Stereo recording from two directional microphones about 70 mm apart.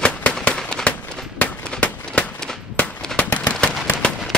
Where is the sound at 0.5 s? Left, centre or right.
Centre.